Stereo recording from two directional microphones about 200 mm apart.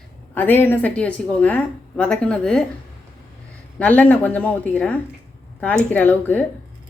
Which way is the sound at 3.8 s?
10° left (ahead or behind).